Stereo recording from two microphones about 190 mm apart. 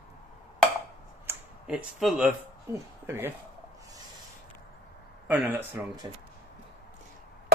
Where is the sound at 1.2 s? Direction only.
5° right (ahead or behind).